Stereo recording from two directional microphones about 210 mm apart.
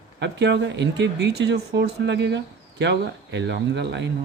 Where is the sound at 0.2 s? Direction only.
55° right (ahead or behind).